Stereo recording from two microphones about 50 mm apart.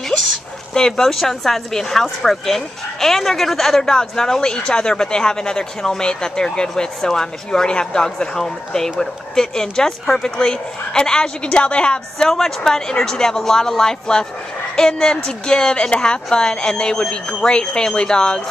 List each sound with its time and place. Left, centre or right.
0.7 s speech: centre
12.3 s speech: centre